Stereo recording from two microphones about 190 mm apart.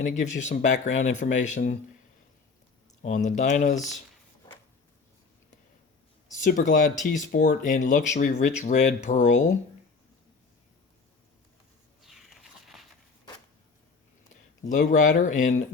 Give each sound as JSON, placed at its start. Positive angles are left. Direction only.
{"t": 0.0, "sound": "speech", "side_deg": 40}
{"t": 3.0, "sound": "speech", "side_deg": 40}
{"t": 6.4, "sound": "speech", "side_deg": 40}
{"t": 12.0, "sound": "a sound", "side_deg": 0}
{"t": 14.6, "sound": "speech", "side_deg": 40}